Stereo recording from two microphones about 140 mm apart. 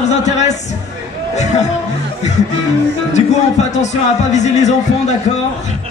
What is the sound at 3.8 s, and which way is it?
Speech, 55° left (ahead or behind).